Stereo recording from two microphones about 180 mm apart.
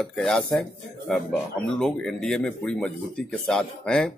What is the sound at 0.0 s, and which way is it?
Speech, 5° left (ahead or behind).